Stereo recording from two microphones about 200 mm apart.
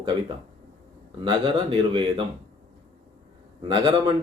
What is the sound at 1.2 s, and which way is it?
Speech, 25° right (ahead or behind).